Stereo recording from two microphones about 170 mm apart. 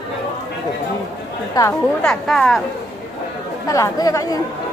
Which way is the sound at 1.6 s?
20° left (ahead or behind).